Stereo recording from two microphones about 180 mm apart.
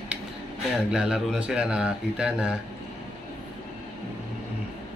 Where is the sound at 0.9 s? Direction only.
5° right (ahead or behind).